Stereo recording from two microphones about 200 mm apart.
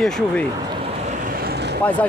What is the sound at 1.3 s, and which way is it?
Vehicle, 50° right (ahead or behind).